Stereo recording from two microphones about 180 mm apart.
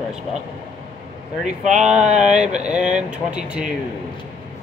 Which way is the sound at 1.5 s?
40° right (ahead or behind).